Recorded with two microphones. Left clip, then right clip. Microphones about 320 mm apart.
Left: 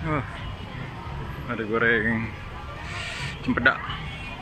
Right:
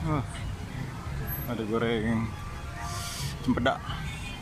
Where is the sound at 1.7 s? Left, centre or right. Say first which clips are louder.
Left 7 dB; centre.